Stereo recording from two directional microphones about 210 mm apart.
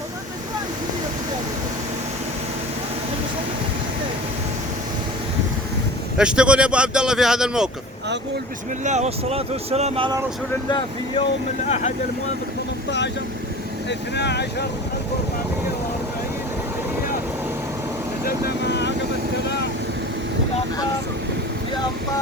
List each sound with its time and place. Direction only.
6.1 s speech: 5° right (ahead or behind)
8.8 s speech: 35° right (ahead or behind)
10.7 s speech: 20° left (ahead or behind)
14.2 s speech: 50° left (ahead or behind)
18.3 s vehicle: 50° left (ahead or behind)